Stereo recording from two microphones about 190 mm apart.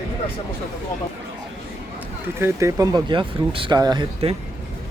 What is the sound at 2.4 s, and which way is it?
Speech, 15° right (ahead or behind).